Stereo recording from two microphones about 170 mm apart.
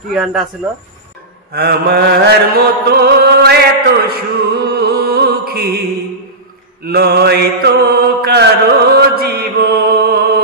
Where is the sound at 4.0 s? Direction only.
70° right (ahead or behind).